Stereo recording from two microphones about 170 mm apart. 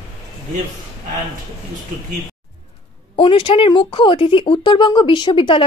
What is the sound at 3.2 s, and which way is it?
Speech, 30° left (ahead or behind).